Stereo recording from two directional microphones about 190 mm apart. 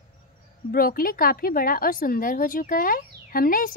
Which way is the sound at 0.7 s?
50° left (ahead or behind).